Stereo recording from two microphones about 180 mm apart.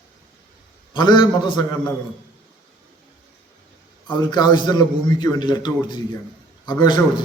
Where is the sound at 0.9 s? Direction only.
25° left (ahead or behind).